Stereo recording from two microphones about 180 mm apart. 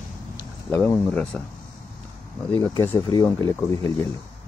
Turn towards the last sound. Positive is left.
turn(degrees=15)  # may be behind; listen again after turning